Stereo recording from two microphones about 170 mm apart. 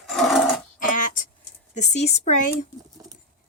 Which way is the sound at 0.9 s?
50° left (ahead or behind).